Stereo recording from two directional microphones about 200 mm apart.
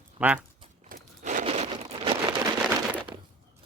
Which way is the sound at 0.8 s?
40° right (ahead or behind).